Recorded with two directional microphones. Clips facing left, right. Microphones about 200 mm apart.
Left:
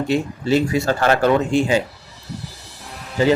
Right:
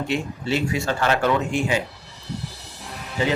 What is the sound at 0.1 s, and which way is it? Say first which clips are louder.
Speech: left 8 dB; 40° left (ahead or behind).